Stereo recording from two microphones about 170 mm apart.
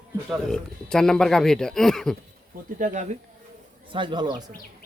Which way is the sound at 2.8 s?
45° right (ahead or behind).